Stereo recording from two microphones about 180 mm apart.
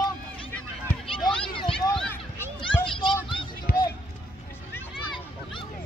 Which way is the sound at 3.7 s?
55° left (ahead or behind).